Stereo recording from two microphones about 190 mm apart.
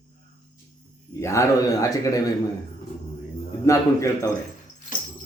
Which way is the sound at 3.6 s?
15° left (ahead or behind).